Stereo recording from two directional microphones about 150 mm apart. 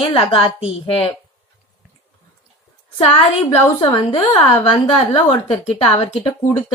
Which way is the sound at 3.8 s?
35° left (ahead or behind).